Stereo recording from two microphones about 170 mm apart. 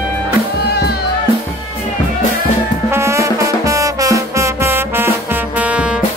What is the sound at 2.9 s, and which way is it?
Music, 15° right (ahead or behind).